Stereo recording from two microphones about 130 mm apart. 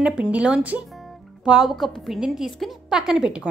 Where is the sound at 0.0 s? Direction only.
10° right (ahead or behind).